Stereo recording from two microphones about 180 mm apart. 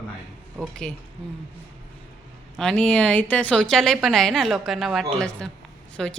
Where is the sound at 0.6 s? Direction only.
5° left (ahead or behind).